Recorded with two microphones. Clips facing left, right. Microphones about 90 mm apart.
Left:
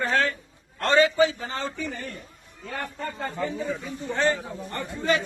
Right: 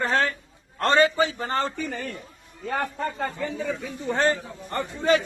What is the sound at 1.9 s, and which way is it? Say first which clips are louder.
Speech: right 3 dB; 70° right (ahead or behind).